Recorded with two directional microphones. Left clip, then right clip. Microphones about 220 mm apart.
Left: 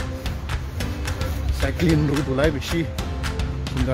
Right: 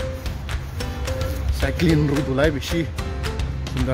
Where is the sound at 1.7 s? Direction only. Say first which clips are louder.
Right 1 dB; 20° right (ahead or behind).